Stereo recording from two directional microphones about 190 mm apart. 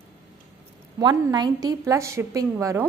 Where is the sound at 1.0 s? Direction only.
20° right (ahead or behind).